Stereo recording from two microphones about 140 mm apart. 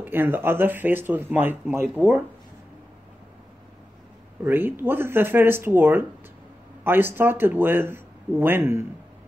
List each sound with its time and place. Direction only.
0.0 s speech: 15° right (ahead or behind)
4.5 s speech: 15° right (ahead or behind)